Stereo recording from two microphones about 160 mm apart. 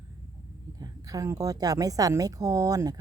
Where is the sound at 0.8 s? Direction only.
20° right (ahead or behind).